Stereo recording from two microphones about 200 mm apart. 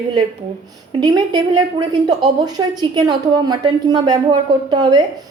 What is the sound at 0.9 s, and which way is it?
A woman's voice, 20° right (ahead or behind).